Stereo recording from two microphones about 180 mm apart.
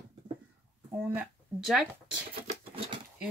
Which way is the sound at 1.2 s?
Centre (ahead or behind).